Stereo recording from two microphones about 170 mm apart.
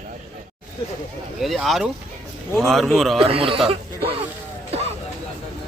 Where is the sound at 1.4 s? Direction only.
Centre (ahead or behind).